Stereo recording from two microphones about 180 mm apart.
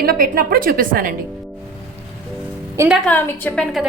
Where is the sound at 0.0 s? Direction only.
55° right (ahead or behind).